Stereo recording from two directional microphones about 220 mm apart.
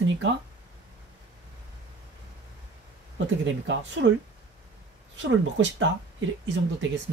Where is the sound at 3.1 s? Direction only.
55° right (ahead or behind).